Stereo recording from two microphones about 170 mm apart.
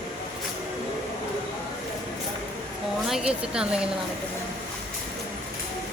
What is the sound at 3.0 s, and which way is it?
Speech, 5° right (ahead or behind).